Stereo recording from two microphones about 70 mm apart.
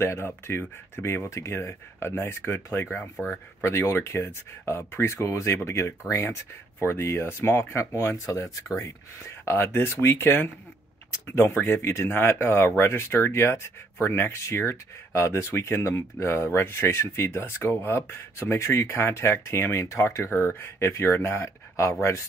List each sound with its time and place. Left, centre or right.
0.0 s speech: left
7.8 s speech: left
9.2 s speech: left